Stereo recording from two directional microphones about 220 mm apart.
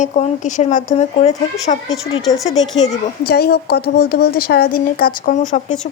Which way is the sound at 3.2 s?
45° left (ahead or behind).